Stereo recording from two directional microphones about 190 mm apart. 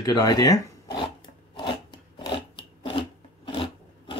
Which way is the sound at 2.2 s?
25° left (ahead or behind).